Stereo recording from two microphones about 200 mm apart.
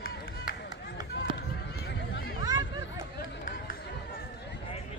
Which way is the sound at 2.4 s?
20° right (ahead or behind).